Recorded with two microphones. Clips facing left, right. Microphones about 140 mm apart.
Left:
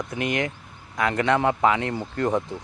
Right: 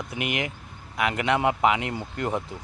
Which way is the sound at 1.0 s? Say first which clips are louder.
Left 2 dB; 15° right (ahead or behind).